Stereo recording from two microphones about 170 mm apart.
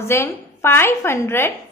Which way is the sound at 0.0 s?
15° left (ahead or behind).